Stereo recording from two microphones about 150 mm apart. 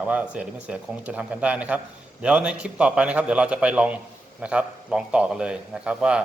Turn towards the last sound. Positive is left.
turn(degrees=-5)  # may be behind; listen again after turning